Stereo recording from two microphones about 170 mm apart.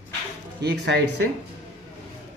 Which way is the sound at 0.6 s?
80° right.